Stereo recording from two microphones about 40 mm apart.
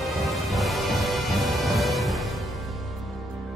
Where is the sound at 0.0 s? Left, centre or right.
Centre.